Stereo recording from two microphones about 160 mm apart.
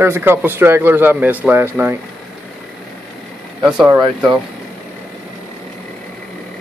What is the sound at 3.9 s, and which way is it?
Speech, 25° right (ahead or behind).